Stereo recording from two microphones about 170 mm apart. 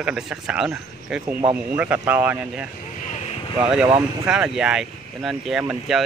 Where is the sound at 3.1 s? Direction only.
35° left (ahead or behind).